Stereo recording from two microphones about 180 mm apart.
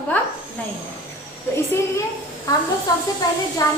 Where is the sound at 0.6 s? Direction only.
10° left (ahead or behind).